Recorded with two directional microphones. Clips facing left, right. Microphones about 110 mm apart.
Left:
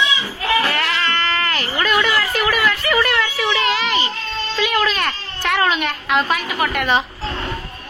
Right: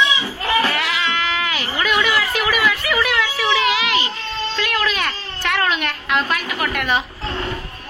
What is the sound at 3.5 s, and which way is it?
Children playing, 5° right (ahead or behind).